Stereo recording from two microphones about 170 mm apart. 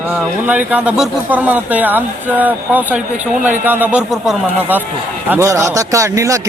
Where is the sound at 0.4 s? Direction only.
10° right (ahead or behind).